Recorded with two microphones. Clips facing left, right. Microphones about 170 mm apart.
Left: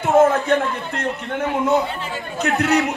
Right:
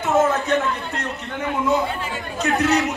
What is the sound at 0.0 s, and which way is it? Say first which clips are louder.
A man's voice: left 4 dB; 55° left (ahead or behind).